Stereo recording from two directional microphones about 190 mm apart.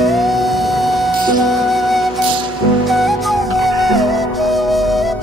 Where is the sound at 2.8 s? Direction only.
Centre (ahead or behind).